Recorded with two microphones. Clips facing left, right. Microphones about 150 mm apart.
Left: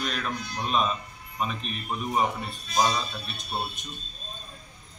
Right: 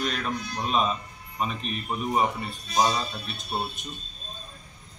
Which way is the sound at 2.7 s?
20° right (ahead or behind).